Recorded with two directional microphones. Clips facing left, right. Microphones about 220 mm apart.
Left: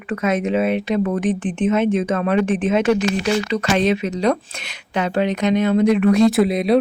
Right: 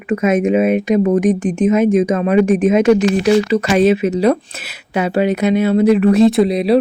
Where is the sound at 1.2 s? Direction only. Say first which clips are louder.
Right 5 dB; 40° right (ahead or behind).